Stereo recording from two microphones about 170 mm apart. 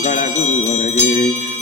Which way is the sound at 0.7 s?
40° left (ahead or behind).